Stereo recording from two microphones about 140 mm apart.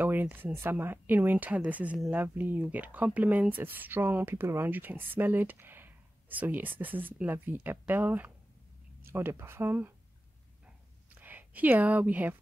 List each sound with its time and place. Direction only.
0.0 s speech: 15° right (ahead or behind)
11.1 s speech: 10° right (ahead or behind)